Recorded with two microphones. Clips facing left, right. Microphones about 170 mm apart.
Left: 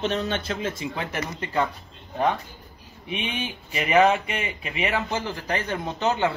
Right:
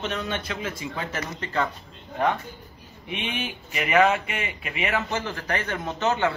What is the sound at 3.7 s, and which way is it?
A man's voice, 20° left (ahead or behind).